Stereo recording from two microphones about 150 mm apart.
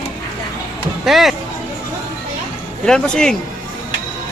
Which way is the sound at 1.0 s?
Centre (ahead or behind).